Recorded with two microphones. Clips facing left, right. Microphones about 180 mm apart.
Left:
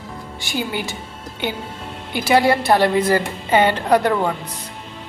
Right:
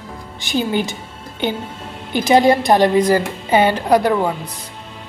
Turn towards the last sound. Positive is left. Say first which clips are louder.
# right 2 dB
turn(degrees=-10)  # may be behind; listen again after turning